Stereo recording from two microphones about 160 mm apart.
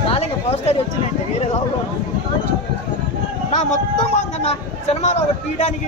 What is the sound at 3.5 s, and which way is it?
Speech, 45° left (ahead or behind).